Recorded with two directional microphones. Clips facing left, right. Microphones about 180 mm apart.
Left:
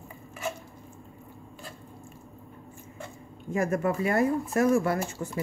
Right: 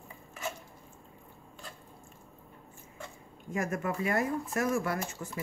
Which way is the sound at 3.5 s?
30° left (ahead or behind).